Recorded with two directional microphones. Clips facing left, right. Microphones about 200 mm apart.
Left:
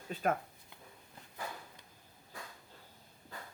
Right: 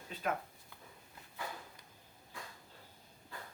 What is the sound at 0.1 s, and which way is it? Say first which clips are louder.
Speech: left 4 dB; 45° left (ahead or behind).